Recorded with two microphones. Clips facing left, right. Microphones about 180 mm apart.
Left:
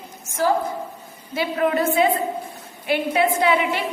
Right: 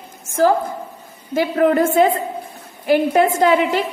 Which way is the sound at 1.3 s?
50° right (ahead or behind).